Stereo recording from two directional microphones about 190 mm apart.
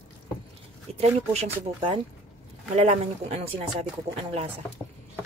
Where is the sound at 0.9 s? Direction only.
35° right (ahead or behind).